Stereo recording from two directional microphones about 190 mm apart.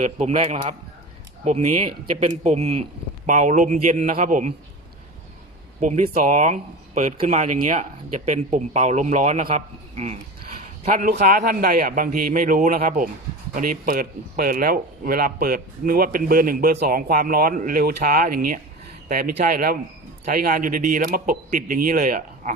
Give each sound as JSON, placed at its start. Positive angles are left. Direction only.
{"t": 0.0, "sound": "speech", "side_deg": -35}
{"t": 5.8, "sound": "speech", "side_deg": -40}
{"t": 10.9, "sound": "speech", "side_deg": -45}